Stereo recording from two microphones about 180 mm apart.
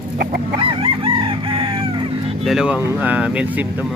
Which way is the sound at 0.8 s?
30° right (ahead or behind).